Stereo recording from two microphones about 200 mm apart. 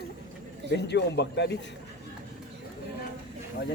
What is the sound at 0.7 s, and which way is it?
Speech, 60° left (ahead or behind).